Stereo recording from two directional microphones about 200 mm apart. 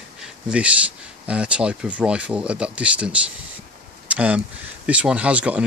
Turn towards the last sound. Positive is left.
turn(degrees=-5)  # may be behind; listen again after turning